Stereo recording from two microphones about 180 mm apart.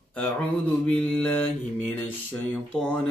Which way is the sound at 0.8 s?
10° left (ahead or behind).